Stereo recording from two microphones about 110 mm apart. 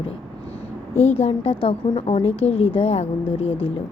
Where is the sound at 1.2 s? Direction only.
65° left (ahead or behind).